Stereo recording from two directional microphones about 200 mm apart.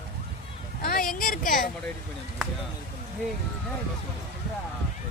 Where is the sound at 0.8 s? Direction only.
45° left (ahead or behind).